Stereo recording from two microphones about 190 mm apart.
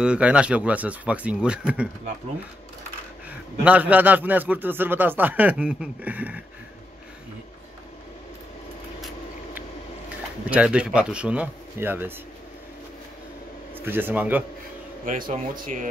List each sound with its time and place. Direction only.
0.0 s a man's voice: 5° right (ahead or behind)
3.3 s a man's voice: 5° right (ahead or behind)
9.0 s a sound: 10° right (ahead or behind)
10.5 s speech: 5° right (ahead or behind)
13.7 s a man's voice: 10° right (ahead or behind)
15.0 s speech: 45° right (ahead or behind)